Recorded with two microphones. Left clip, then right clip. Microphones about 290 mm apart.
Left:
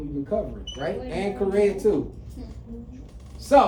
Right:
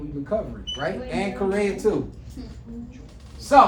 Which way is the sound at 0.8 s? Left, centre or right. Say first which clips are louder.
Even; centre.